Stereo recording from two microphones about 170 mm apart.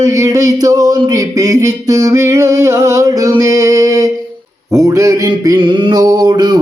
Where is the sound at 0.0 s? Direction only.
20° right (ahead or behind).